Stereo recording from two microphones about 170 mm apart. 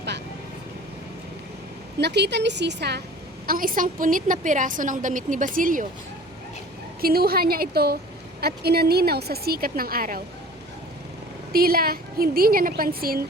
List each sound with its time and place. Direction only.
2.0 s a woman's voice: 80° right
3.4 s a woman's voice: 55° right (ahead or behind)
7.0 s a woman's voice: 65° right (ahead or behind)
11.5 s a woman's voice: 60° right (ahead or behind)